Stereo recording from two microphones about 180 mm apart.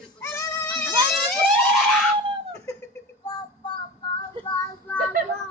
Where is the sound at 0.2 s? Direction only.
15° left (ahead or behind).